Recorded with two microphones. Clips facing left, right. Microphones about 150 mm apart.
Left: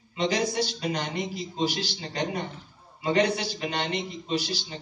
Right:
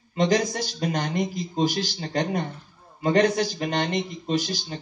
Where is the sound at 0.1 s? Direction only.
45° right (ahead or behind).